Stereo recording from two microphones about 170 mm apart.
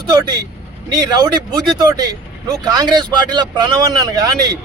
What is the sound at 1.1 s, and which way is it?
Speech, 25° right (ahead or behind).